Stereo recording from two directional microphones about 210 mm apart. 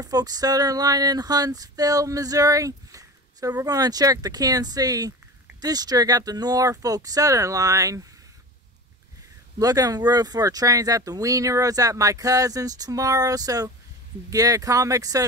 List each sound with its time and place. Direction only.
0.0 s speech: 15° right (ahead or behind)
9.6 s speech: 15° right (ahead or behind)